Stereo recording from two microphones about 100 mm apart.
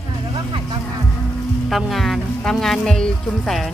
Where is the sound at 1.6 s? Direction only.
Centre (ahead or behind).